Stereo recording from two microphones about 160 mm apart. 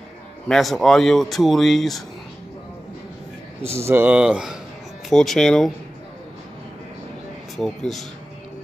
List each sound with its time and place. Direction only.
0.5 s speech: centre (ahead or behind)
3.6 s speech: 15° right (ahead or behind); by 5.7 s centre (ahead or behind)
7.5 s speech: centre (ahead or behind)